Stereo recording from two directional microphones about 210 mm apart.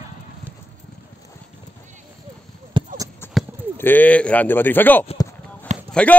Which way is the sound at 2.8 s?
25° right (ahead or behind).